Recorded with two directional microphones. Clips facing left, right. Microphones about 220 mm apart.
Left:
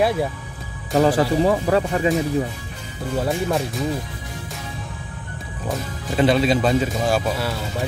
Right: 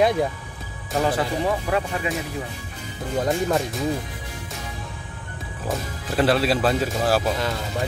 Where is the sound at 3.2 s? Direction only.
Centre (ahead or behind).